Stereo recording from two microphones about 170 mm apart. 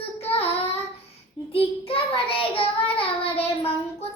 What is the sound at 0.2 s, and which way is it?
Child singing, 35° left (ahead or behind).